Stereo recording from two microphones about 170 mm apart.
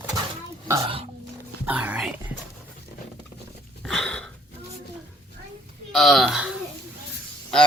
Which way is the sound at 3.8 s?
Centre (ahead or behind).